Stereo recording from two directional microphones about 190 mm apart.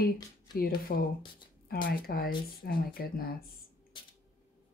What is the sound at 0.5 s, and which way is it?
Speech, 50° left (ahead or behind).